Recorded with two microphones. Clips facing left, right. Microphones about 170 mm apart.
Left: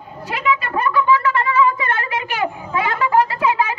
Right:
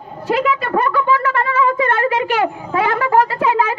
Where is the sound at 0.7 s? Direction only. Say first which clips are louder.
Right 1 dB; 55° right (ahead or behind).